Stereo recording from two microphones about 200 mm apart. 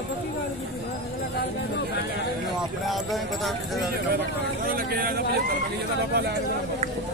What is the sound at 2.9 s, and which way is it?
Speech, centre (ahead or behind).